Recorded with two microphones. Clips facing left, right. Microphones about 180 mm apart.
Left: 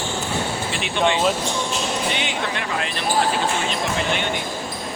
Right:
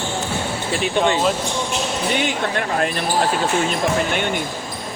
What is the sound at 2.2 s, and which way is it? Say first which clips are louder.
Speech: right 4 dB; 45° right (ahead or behind).